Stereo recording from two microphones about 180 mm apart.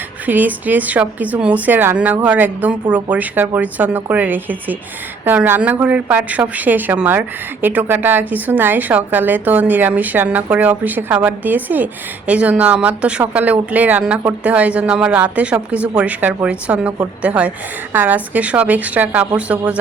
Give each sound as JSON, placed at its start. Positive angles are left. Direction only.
{"t": 0.3, "sound": "a woman's voice", "side_deg": -10}